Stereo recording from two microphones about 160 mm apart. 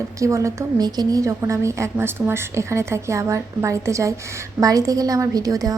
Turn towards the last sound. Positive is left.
turn(degrees=-20)  # may be behind; listen again after turning